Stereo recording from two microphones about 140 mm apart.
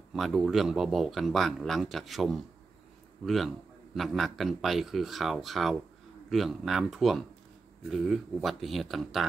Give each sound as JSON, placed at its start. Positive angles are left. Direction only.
{"t": 0.1, "sound": "a man's voice", "side_deg": 0}